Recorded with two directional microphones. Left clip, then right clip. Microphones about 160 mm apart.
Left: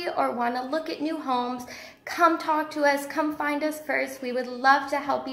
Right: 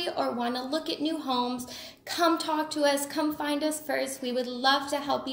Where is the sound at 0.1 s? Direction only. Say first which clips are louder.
Left 7 dB; 10° right (ahead or behind).